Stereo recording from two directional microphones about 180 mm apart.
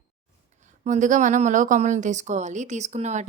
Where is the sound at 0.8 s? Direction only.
45° right (ahead or behind).